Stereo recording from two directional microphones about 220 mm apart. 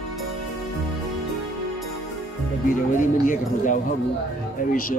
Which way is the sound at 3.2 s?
35° left (ahead or behind).